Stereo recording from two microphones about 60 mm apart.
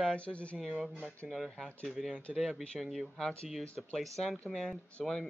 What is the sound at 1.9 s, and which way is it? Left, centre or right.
Speech, centre.